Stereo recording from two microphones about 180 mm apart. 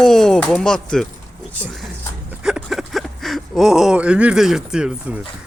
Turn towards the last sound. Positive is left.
turn(degrees=-5)  # may be behind; listen again after turning